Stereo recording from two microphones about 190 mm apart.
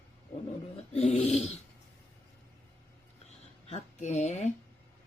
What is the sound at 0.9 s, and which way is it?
Speech, 35° left (ahead or behind).